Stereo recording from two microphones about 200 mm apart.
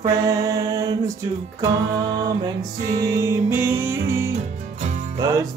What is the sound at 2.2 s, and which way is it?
Music, 20° right (ahead or behind).